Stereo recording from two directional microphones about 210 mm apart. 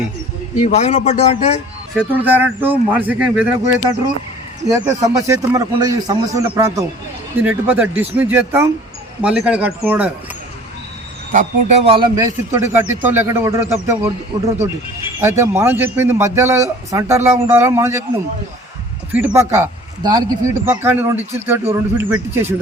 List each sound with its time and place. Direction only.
0.6 s a man's voice: 30° left (ahead or behind)
2.0 s a man's voice: 10° right (ahead or behind)
11.3 s a man's voice: 35° right (ahead or behind); by 18.0 s 15° right (ahead or behind)
19.1 s a man's voice: 5° right (ahead or behind)